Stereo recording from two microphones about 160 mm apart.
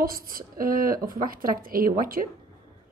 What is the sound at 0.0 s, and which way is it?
Speech, 65° right (ahead or behind).